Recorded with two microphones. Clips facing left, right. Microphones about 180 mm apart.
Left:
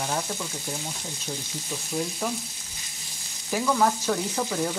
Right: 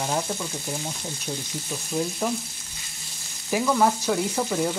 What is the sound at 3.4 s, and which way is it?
Frying, 10° right (ahead or behind).